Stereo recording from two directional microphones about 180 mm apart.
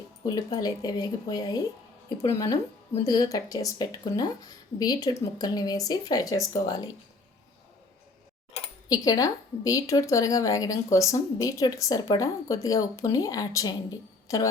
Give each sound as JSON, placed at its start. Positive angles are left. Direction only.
{"t": 0.3, "sound": "a woman's voice", "side_deg": 20}
{"t": 8.9, "sound": "a woman's voice", "side_deg": 20}